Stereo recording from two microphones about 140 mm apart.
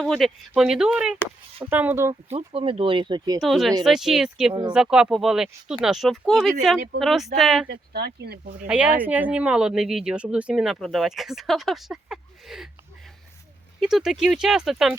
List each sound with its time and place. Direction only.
0.0 s speech: centre (ahead or behind); by 2.1 s 15° right (ahead or behind)
2.3 s speech: 40° right (ahead or behind)
3.4 s speech: centre (ahead or behind)
8.2 s speech: 90° right
8.6 s speech: 10° right (ahead or behind)
13.7 s speech: 5° right (ahead or behind)